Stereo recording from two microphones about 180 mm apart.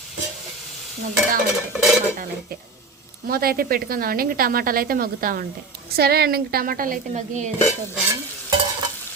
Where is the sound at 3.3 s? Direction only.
55° right (ahead or behind).